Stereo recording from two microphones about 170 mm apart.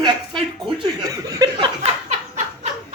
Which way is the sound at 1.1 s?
20° right (ahead or behind).